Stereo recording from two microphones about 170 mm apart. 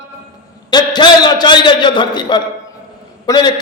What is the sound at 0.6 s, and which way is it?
A man's voice, 25° left (ahead or behind).